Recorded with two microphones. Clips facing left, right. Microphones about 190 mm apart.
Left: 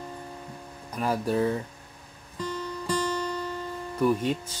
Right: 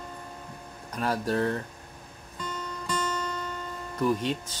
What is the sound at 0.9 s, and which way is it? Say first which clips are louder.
Speech: left 1 dB; 10° left (ahead or behind).